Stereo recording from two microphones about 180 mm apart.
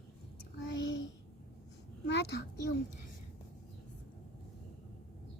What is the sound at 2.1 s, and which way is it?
Speech, 70° left (ahead or behind).